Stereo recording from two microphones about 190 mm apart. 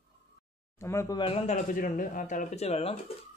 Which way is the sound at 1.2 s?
30° left (ahead or behind).